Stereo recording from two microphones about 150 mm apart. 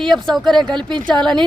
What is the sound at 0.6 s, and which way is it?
Speech, 30° right (ahead or behind).